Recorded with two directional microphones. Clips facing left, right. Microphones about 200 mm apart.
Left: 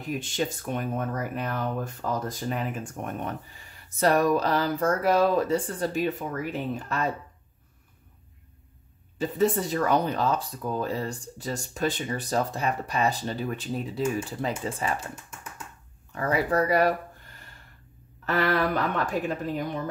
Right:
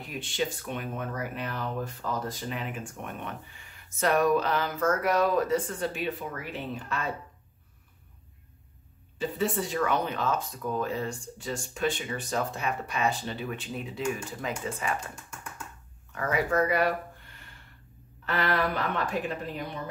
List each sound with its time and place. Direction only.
0.0 s speech: 45° left (ahead or behind)
9.2 s speech: 40° left (ahead or behind)
16.2 s speech: 35° left (ahead or behind)